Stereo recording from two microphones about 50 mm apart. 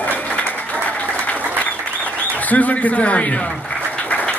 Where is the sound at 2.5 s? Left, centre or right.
Left.